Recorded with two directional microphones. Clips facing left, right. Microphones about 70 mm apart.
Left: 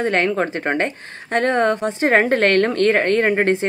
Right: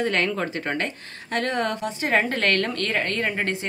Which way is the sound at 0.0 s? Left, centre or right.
Left.